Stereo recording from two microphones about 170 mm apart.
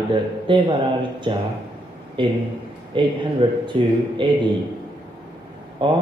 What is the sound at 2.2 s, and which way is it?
A man's voice, 30° right (ahead or behind).